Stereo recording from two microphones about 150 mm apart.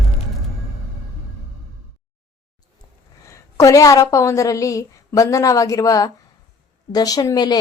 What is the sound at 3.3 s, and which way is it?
A woman's voice, 20° left (ahead or behind).